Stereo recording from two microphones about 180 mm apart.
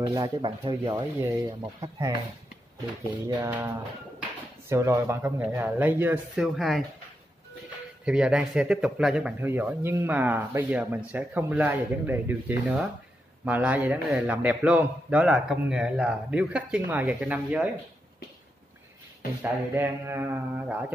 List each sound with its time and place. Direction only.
0.0 s a man's voice: 20° right (ahead or behind)
3.3 s a man's voice: 10° right (ahead or behind)
8.0 s a man's voice: 5° right (ahead or behind)
19.4 s a man's voice: 10° right (ahead or behind)